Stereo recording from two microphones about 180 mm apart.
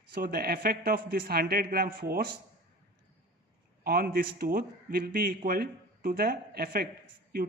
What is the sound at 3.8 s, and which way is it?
A man's voice, 55° right (ahead or behind).